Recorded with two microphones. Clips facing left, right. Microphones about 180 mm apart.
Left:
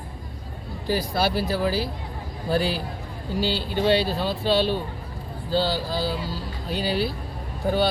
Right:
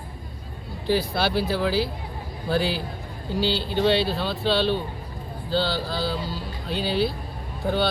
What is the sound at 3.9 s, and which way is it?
Speech, 40° left (ahead or behind).